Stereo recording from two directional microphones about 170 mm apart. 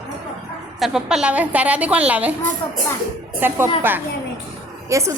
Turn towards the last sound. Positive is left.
turn(degrees=-20)  # may be behind; listen again after turning